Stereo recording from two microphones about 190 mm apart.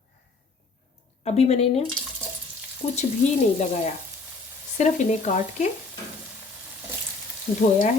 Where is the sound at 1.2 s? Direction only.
35° left (ahead or behind).